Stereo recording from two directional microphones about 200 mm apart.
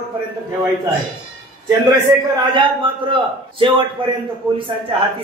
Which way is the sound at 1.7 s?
15° right (ahead or behind).